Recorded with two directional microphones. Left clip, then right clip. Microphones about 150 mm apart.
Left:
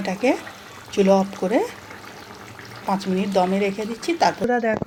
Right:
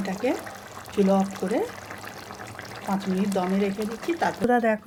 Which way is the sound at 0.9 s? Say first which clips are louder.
Left 5 dB; 30° left (ahead or behind).